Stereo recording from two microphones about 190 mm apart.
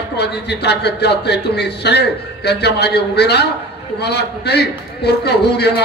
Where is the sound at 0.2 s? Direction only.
60° left (ahead or behind).